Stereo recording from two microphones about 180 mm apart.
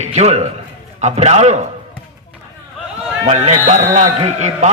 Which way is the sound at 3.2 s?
40° right (ahead or behind).